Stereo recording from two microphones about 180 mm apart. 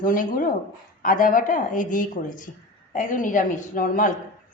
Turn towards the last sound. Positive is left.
turn(degrees=50)  # may be behind; listen again after turning